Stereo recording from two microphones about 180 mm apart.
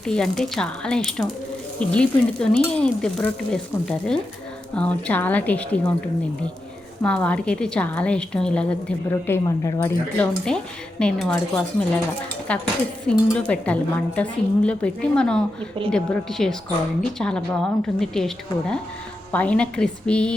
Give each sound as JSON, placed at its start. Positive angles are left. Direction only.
{"t": 0.0, "sound": "a woman's voice", "side_deg": 5}
{"t": 7.0, "sound": "a woman's voice", "side_deg": 5}
{"t": 11.0, "sound": "a woman's voice", "side_deg": 5}
{"t": 19.3, "sound": "a woman's voice", "side_deg": 5}